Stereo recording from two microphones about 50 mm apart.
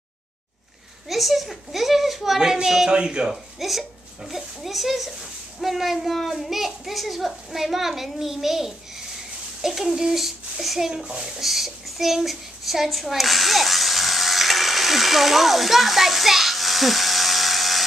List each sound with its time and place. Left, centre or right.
1.0 s a child's voice: centre
3.5 s a child's voice: centre
11.1 s a sound: centre